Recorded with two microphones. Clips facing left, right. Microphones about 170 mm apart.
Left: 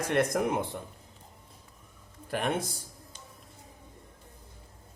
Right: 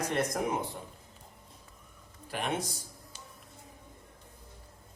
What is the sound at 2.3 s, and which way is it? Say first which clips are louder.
Speech: left 4 dB; 50° left (ahead or behind).